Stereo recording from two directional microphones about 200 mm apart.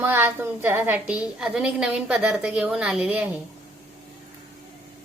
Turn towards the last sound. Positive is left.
turn(degrees=-5)  # may be behind; listen again after turning